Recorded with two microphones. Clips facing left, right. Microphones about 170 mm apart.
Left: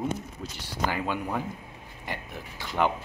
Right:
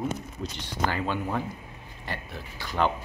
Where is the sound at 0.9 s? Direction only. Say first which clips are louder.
Right 1 dB; 10° left (ahead or behind).